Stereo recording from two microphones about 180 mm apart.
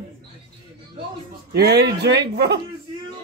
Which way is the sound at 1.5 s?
65° right (ahead or behind).